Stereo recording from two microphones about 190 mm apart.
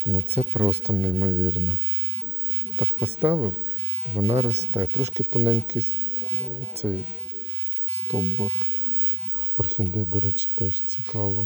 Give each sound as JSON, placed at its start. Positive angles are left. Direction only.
{"t": 0.3, "sound": "speech", "side_deg": -15}
{"t": 0.7, "sound": "speech", "side_deg": -35}
{"t": 1.0, "sound": "speech", "side_deg": -10}
{"t": 2.7, "sound": "speech", "side_deg": -10}
{"t": 6.8, "sound": "speech", "side_deg": -20}
{"t": 8.1, "sound": "speech", "side_deg": -15}
{"t": 9.6, "sound": "speech", "side_deg": -15}